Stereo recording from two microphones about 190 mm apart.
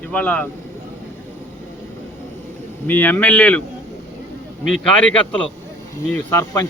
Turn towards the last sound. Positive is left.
turn(degrees=10)  # may be behind; listen again after turning